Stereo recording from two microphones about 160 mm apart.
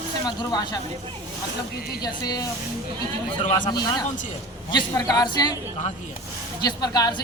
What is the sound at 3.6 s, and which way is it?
Speech, 25° left (ahead or behind).